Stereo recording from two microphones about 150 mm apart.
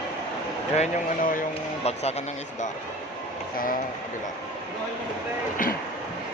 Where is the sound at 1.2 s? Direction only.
65° left (ahead or behind).